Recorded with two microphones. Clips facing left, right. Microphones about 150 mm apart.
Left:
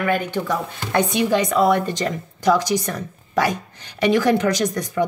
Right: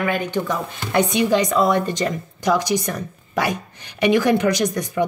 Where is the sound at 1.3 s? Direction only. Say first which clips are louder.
Left 3 dB; 55° left (ahead or behind).